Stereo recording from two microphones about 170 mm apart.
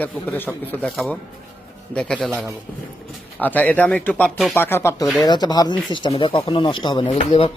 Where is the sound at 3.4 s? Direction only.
10° left (ahead or behind).